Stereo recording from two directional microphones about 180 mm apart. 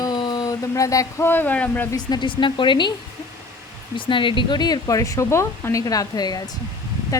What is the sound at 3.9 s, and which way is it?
Speech, 25° left (ahead or behind).